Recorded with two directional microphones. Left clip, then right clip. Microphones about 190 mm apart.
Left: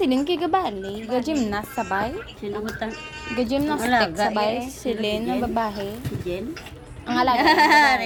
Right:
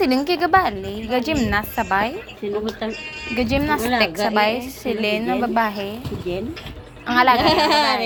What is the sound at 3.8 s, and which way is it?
Speech, 50° left (ahead or behind).